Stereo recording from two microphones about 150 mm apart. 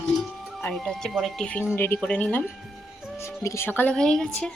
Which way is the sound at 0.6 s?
5° left (ahead or behind).